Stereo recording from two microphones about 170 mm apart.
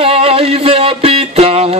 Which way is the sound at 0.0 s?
35° right (ahead or behind).